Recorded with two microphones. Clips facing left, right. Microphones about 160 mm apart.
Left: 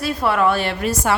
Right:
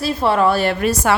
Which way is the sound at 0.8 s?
70° right (ahead or behind).